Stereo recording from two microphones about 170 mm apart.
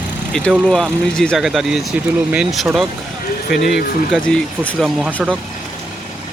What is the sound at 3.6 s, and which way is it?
Speech, 65° left (ahead or behind).